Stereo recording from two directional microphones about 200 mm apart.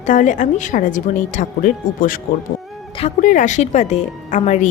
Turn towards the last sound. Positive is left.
turn(degrees=35)  # may be behind; listen again after turning